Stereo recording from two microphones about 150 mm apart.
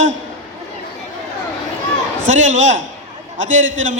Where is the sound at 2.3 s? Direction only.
55° right (ahead or behind).